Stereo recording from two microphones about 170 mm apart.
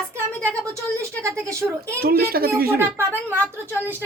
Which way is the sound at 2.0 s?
65° right (ahead or behind).